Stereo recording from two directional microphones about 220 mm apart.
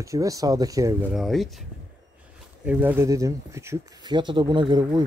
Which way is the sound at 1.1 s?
Centre (ahead or behind).